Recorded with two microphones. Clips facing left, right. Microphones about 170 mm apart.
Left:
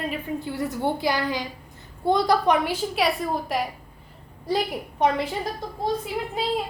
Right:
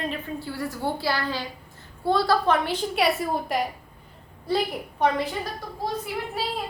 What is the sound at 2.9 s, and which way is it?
Speech, centre (ahead or behind).